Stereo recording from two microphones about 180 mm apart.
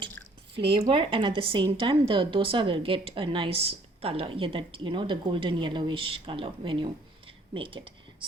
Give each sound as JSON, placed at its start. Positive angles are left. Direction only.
{"t": 0.5, "sound": "a woman's voice", "side_deg": -30}